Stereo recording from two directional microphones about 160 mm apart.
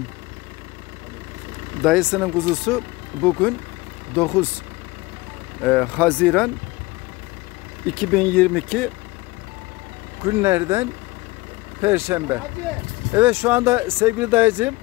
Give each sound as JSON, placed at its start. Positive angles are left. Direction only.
{"t": 1.8, "sound": "speech", "side_deg": 0}
{"t": 5.6, "sound": "speech", "side_deg": 10}
{"t": 7.9, "sound": "speech", "side_deg": 5}
{"t": 10.2, "sound": "speech", "side_deg": -15}